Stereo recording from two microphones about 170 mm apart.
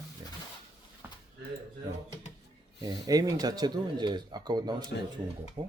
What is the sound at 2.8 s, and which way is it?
Speech, 20° right (ahead or behind).